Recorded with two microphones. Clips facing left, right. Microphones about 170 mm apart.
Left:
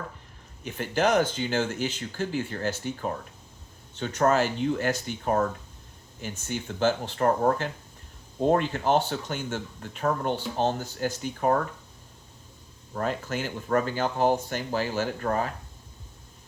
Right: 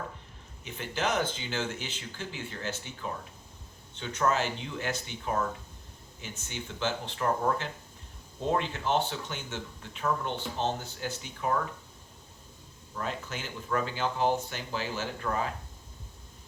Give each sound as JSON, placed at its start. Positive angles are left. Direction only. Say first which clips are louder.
{"t": 0.6, "sound": "speech", "louder": "left 7 dB", "side_deg": 50}
{"t": 6.5, "sound": "speech", "louder": "left 8 dB", "side_deg": 45}
{"t": 12.9, "sound": "speech", "louder": "left 7 dB", "side_deg": 50}